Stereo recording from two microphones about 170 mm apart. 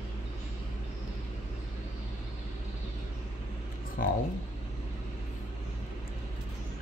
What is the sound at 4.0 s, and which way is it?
Speech, 60° left (ahead or behind).